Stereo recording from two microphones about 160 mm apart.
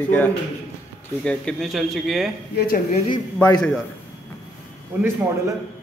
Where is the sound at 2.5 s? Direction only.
65° left (ahead or behind).